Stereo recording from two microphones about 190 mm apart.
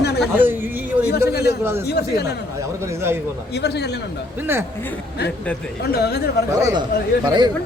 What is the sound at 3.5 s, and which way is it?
Speech, 60° left (ahead or behind).